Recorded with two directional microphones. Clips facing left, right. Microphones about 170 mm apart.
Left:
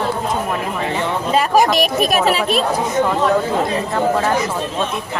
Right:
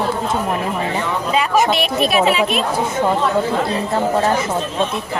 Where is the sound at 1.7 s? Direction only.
40° left (ahead or behind).